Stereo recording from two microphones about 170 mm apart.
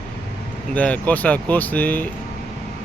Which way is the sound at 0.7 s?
10° left (ahead or behind).